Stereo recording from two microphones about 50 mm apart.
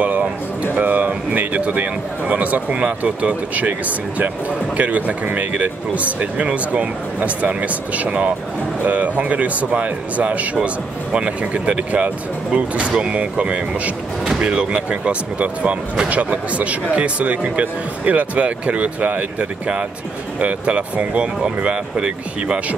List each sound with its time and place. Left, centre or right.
0.0 s a sound: right
0.7 s speech: right
4.7 s speech: right
20.3 s speech: right